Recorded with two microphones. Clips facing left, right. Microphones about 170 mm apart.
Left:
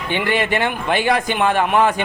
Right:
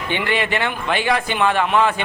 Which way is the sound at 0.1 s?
45° left (ahead or behind).